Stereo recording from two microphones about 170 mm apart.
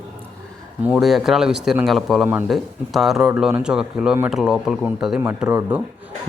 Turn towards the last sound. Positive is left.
turn(degrees=-15)  # may be behind; listen again after turning